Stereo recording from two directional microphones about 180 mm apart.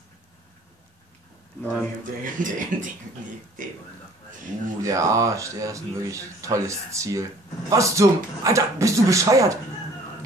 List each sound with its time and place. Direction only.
1.6 s speech: 10° left (ahead or behind)
2.2 s speech: 45° right (ahead or behind)
4.8 s speech: 15° right (ahead or behind)